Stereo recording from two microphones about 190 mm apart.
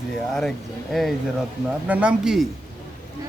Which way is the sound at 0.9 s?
Centre (ahead or behind).